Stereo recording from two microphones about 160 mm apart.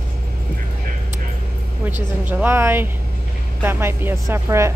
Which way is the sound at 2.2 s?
10° right (ahead or behind).